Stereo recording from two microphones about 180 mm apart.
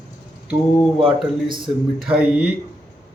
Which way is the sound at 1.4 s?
25° right (ahead or behind).